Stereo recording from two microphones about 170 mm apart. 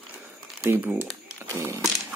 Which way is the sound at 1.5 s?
15° right (ahead or behind).